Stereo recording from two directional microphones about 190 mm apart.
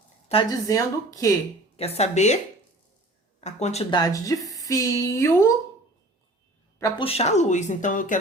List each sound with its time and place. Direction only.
0.3 s a woman's voice: 30° left (ahead or behind)
0.7 s speech: 15° left (ahead or behind)
1.7 s speech: 30° left (ahead or behind)
3.4 s speech: 35° left (ahead or behind)
3.9 s speech: 20° left (ahead or behind)
7.0 s speech: 30° left (ahead or behind)